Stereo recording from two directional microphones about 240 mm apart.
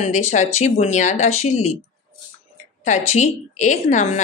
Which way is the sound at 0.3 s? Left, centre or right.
Left.